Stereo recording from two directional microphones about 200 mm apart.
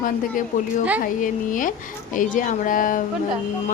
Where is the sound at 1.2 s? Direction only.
40° left (ahead or behind).